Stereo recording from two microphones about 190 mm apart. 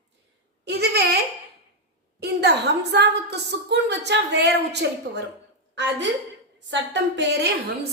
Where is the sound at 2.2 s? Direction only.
60° right (ahead or behind).